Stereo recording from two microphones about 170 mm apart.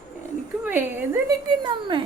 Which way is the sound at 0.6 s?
10° right (ahead or behind).